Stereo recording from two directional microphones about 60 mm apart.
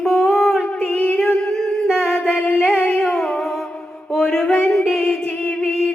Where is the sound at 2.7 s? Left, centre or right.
Left.